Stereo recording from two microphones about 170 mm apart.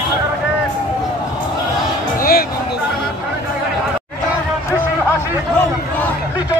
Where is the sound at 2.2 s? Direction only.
60° left (ahead or behind).